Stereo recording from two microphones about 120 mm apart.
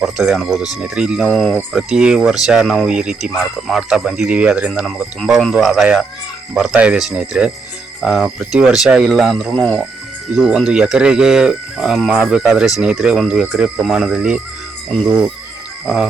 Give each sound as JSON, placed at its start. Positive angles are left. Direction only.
{"t": 0.0, "sound": "speech", "side_deg": -5}
{"t": 5.2, "sound": "speech", "side_deg": 0}
{"t": 10.3, "sound": "speech", "side_deg": -5}